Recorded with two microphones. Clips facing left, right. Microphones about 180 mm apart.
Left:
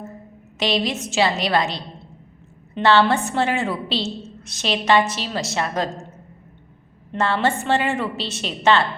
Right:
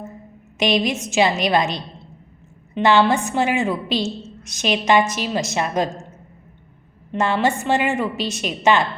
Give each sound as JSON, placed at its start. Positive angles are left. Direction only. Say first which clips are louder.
{"t": 0.6, "sound": "a woman's voice", "louder": "right 3 dB", "side_deg": -20}
{"t": 2.8, "sound": "a woman's voice", "louder": "right 1 dB", "side_deg": -15}
{"t": 7.2, "sound": "a woman's voice", "louder": "right 1 dB", "side_deg": -15}